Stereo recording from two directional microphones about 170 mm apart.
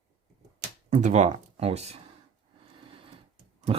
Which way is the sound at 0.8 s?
45° right (ahead or behind).